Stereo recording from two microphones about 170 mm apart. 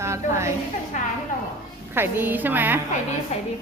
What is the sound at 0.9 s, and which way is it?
Speech, 45° left (ahead or behind).